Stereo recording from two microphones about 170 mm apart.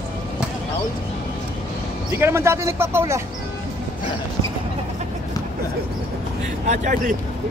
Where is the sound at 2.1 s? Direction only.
15° right (ahead or behind).